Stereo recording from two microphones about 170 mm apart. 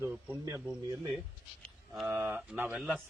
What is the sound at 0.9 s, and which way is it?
Speech, 20° right (ahead or behind).